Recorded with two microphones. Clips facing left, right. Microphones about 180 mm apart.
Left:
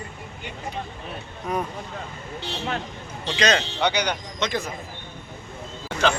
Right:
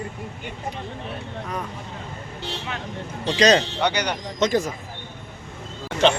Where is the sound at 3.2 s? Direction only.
40° right (ahead or behind).